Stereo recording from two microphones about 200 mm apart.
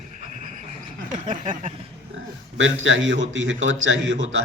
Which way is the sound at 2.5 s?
70° right (ahead or behind).